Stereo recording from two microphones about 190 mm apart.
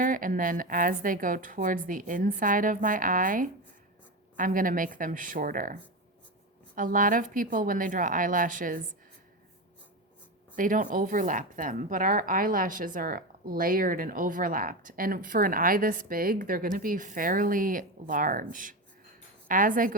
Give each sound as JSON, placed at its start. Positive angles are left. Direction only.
{"t": 0.0, "sound": "a woman's voice", "side_deg": -45}
{"t": 6.7, "sound": "a woman's voice", "side_deg": -45}
{"t": 10.5, "sound": "a woman's voice", "side_deg": -45}